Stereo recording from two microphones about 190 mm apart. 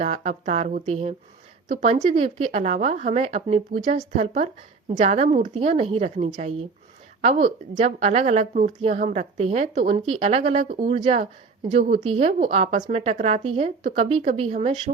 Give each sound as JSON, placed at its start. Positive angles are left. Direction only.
{"t": 0.0, "sound": "a woman's voice", "side_deg": -40}
{"t": 11.9, "sound": "a woman's voice", "side_deg": -30}